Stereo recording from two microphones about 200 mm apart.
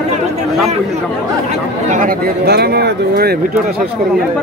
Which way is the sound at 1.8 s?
40° right (ahead or behind).